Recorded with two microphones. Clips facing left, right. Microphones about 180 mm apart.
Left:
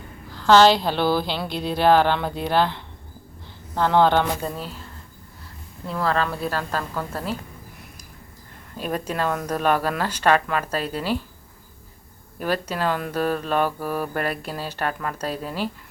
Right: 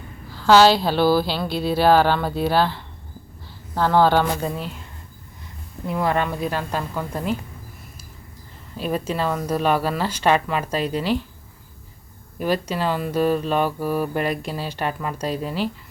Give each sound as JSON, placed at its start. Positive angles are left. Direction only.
{"t": 0.3, "sound": "a woman's voice", "side_deg": -10}
{"t": 5.8, "sound": "speech", "side_deg": -20}
{"t": 9.1, "sound": "speech", "side_deg": -5}
{"t": 12.4, "sound": "speech", "side_deg": -10}